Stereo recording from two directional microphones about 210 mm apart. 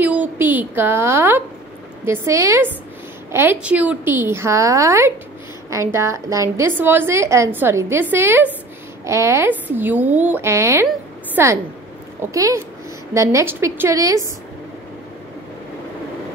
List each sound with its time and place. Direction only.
0.0 s a woman's voice: 10° right (ahead or behind)